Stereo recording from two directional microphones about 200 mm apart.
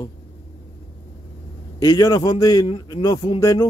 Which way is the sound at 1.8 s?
20° left (ahead or behind).